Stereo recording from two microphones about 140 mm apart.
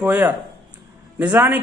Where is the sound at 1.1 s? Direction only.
10° right (ahead or behind).